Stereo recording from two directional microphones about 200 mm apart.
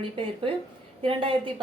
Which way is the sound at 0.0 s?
25° right (ahead or behind).